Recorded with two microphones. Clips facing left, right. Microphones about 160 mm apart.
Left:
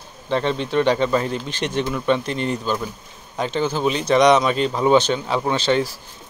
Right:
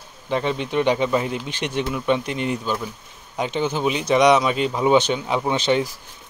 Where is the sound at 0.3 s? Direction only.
10° right (ahead or behind).